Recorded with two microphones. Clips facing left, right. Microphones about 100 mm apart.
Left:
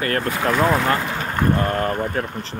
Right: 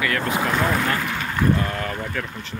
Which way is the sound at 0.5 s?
10° left (ahead or behind).